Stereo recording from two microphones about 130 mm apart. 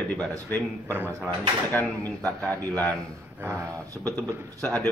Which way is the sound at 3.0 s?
20° right (ahead or behind).